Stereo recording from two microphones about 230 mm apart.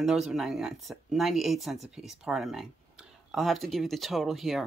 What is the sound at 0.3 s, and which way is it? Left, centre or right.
Speech, centre.